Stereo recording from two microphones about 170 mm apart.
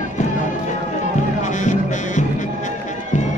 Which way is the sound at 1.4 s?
45° left (ahead or behind).